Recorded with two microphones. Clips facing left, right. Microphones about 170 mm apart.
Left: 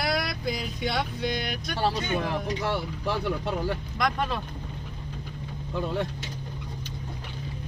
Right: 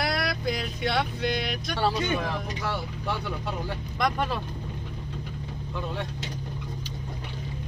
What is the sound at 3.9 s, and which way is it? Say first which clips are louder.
Speech: right 3 dB; centre (ahead or behind).